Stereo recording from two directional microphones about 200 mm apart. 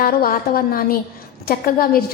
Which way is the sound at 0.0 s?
45° left (ahead or behind).